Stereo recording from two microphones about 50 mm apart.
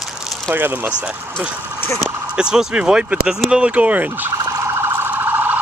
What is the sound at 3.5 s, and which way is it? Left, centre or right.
Fowl, right.